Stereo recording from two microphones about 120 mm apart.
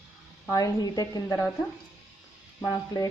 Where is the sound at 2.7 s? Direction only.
30° left (ahead or behind).